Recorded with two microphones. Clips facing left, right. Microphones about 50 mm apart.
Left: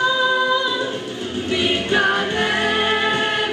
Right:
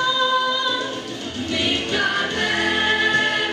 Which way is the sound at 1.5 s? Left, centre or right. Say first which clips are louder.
Left 4 dB; left.